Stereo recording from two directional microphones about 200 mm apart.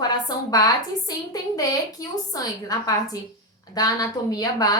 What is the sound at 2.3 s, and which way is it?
A woman's voice, 20° left (ahead or behind).